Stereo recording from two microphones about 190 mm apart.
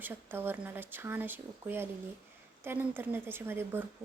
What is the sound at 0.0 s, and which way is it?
A woman's voice, 10° right (ahead or behind).